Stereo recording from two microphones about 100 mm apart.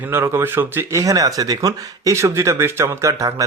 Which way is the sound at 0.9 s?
35° right (ahead or behind).